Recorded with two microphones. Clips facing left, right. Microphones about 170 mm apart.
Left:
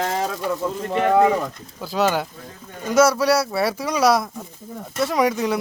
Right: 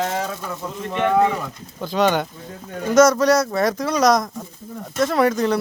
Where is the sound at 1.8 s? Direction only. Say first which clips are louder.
Right 2 dB; 5° left (ahead or behind).